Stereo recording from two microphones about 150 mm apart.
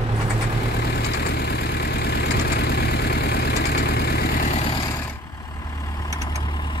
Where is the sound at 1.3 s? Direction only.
90° left.